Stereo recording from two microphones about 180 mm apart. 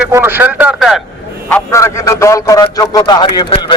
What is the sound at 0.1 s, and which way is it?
Speech, 10° right (ahead or behind).